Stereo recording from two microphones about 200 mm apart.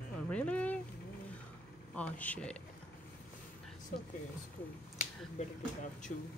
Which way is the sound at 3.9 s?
40° left (ahead or behind).